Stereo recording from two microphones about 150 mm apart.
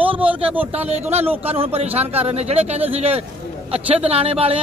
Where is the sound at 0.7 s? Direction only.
45° right (ahead or behind).